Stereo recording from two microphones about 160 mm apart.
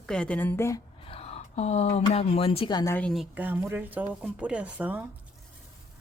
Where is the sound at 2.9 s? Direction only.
Centre (ahead or behind).